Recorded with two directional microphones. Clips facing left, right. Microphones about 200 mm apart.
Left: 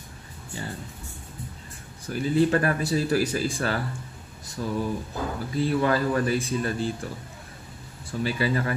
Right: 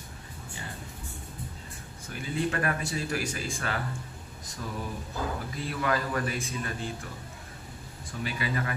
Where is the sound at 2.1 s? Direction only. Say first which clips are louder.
Left 9 dB; 35° left (ahead or behind).